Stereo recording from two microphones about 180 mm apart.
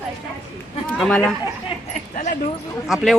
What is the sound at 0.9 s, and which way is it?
Speech, 5° left (ahead or behind).